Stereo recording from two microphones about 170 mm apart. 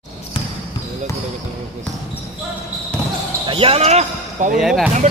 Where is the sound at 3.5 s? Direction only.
35° right (ahead or behind).